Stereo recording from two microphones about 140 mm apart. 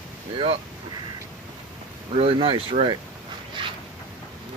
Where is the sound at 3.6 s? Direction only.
35° right (ahead or behind).